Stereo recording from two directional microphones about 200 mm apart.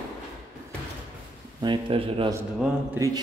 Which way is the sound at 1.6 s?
25° right (ahead or behind).